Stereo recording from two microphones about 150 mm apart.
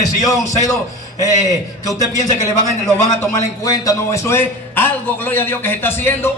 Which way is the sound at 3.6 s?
25° left (ahead or behind).